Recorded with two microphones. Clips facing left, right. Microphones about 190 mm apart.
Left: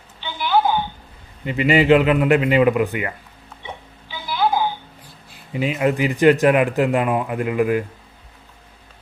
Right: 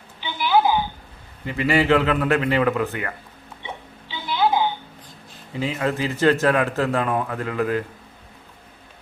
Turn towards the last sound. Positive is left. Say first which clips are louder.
# left 4 dB
turn(degrees=15)  # may be behind; listen again after turning